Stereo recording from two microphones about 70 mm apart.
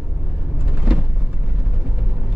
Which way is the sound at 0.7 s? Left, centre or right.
Centre.